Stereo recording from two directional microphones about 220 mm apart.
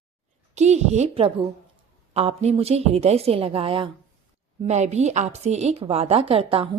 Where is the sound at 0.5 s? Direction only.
30° right (ahead or behind).